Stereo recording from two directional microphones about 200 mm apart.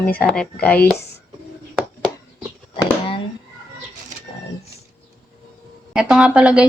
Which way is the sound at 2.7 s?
25° left (ahead or behind).